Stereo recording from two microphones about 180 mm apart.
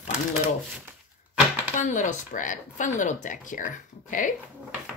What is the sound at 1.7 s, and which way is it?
Speech, 45° left (ahead or behind).